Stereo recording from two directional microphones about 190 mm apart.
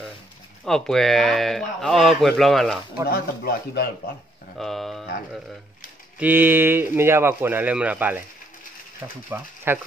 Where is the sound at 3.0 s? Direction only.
55° left (ahead or behind).